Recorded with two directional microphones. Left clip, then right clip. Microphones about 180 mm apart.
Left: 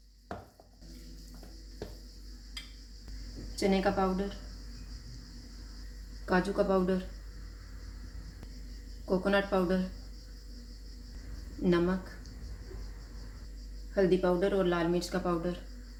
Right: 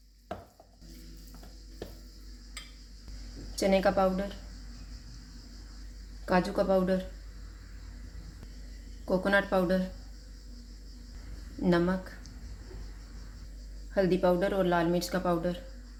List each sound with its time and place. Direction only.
3.5 s speech: 45° right (ahead or behind)
6.2 s speech: 45° right (ahead or behind)
9.0 s speech: 45° right (ahead or behind)
11.6 s speech: 45° right (ahead or behind)
13.9 s speech: 50° right (ahead or behind)